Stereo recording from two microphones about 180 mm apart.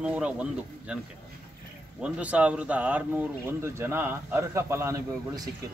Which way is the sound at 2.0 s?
5° right (ahead or behind).